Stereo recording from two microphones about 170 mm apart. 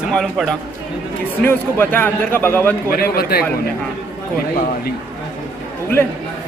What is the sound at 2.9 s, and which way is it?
Speech, 60° left (ahead or behind).